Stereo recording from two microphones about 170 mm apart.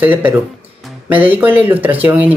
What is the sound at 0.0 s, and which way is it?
Speech, 10° right (ahead or behind).